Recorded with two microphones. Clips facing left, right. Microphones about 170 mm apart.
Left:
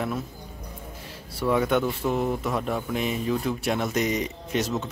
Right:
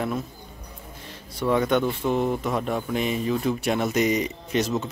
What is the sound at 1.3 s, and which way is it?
Speech, 5° left (ahead or behind).